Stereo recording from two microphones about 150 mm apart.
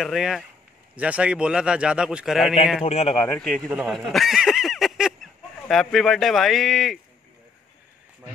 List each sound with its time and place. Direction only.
0.0 s a man's voice: centre (ahead or behind)
2.8 s a man's voice: 45° left (ahead or behind)
3.3 s a man's voice: 5° left (ahead or behind)